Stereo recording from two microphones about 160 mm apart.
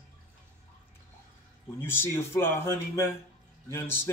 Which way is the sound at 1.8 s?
15° left (ahead or behind).